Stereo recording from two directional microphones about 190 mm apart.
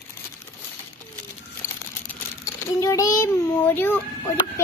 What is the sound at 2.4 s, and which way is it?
A child's voice, 15° left (ahead or behind).